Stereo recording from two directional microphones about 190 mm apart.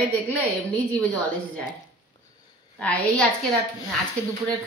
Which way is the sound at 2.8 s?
5° left (ahead or behind).